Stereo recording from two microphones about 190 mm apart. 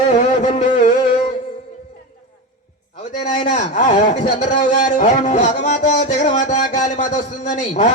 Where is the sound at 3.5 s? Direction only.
40° left (ahead or behind).